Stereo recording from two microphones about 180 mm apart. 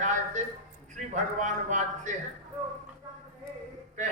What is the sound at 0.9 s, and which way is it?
A man's voice, 40° right (ahead or behind).